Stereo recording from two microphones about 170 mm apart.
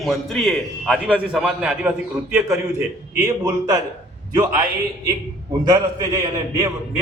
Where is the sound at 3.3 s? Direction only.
20° right (ahead or behind).